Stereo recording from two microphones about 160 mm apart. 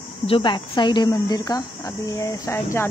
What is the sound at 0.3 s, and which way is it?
Speech, 30° left (ahead or behind).